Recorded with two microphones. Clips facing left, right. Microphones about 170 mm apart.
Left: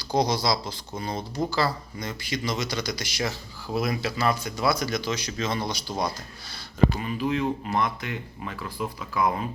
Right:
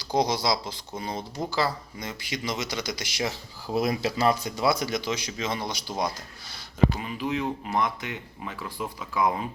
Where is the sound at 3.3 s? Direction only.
35° right (ahead or behind).